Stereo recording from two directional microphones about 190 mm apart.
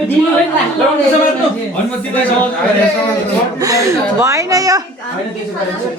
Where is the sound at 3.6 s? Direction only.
20° right (ahead or behind).